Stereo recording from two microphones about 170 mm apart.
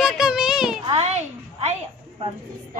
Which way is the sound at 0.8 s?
35° right (ahead or behind).